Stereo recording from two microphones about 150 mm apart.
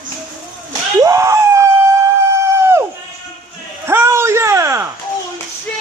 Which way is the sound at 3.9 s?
15° right (ahead or behind).